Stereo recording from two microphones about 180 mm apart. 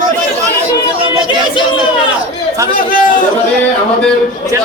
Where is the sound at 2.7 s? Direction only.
50° left (ahead or behind).